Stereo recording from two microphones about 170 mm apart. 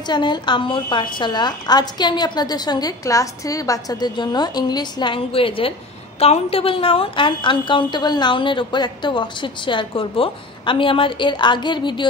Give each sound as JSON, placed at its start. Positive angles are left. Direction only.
{"t": 0.0, "sound": "a woman's voice", "side_deg": 25}